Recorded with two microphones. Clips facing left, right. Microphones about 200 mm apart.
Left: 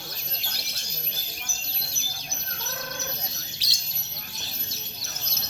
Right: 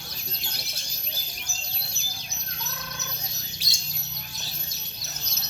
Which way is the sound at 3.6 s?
50° right (ahead or behind).